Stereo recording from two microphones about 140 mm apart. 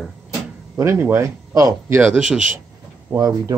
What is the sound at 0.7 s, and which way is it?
Speech, 15° right (ahead or behind).